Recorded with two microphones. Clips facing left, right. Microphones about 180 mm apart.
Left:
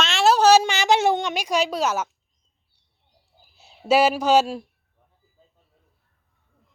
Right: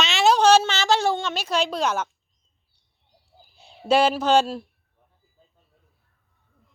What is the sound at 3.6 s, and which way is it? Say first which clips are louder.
Speech: left 1 dB; 5° left (ahead or behind).